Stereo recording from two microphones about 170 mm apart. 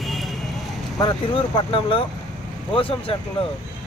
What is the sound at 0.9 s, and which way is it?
Speech, 30° left (ahead or behind).